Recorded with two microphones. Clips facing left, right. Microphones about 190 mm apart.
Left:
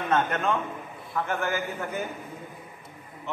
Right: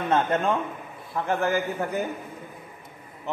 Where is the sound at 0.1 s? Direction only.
30° right (ahead or behind).